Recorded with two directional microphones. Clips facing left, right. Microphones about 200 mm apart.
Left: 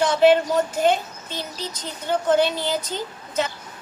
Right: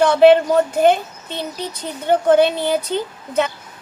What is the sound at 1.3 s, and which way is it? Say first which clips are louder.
Speech: right 5 dB; 60° right (ahead or behind).